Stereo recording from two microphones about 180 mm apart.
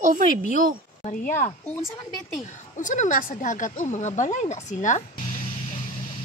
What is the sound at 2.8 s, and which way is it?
Speech, 45° left (ahead or behind).